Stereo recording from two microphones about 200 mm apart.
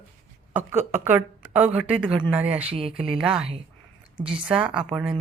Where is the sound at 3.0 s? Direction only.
5° right (ahead or behind).